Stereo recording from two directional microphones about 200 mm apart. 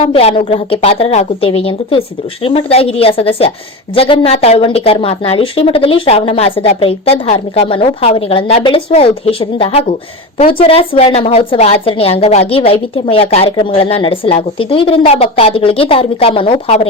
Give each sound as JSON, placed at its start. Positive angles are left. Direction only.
{"t": 0.0, "sound": "a woman's voice", "side_deg": 30}